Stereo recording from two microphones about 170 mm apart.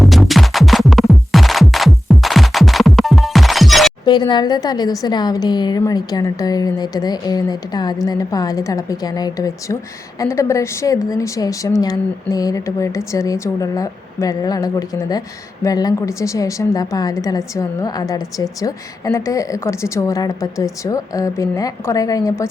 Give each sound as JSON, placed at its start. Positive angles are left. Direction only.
{"t": 0.0, "sound": "music", "side_deg": 0}
{"t": 4.0, "sound": "a woman's voice", "side_deg": 25}